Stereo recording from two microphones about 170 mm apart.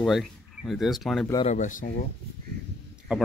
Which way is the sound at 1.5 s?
50° left (ahead or behind).